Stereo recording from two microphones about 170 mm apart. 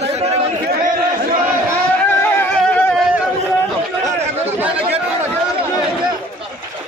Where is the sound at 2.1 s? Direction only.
10° left (ahead or behind).